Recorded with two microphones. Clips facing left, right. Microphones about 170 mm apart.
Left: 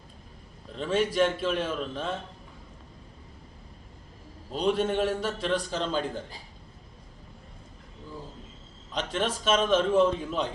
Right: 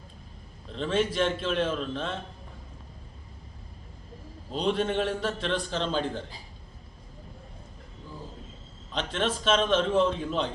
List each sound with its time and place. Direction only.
0.7 s a man's voice: 10° left (ahead or behind)
4.5 s a man's voice: 5° left (ahead or behind)
8.9 s a man's voice: 10° left (ahead or behind)